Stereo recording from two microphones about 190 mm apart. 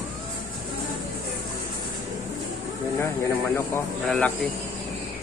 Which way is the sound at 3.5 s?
10° left (ahead or behind).